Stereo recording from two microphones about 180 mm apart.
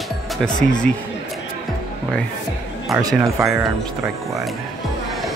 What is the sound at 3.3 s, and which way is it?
Speech, 10° right (ahead or behind).